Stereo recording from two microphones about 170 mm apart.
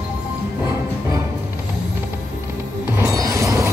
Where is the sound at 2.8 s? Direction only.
15° right (ahead or behind).